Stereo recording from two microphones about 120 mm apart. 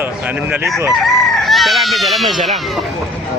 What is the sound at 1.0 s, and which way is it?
Chicken, centre (ahead or behind).